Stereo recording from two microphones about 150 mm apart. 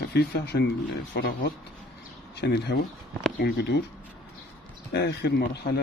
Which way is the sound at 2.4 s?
90° left.